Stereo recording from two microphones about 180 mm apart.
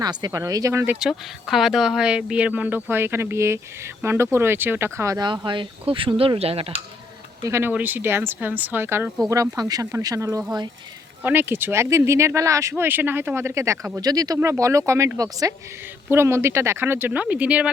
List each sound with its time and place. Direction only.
0.0 s speech: 25° right (ahead or behind)
7.4 s speech: 15° right (ahead or behind)
9.3 s speech: 20° right (ahead or behind)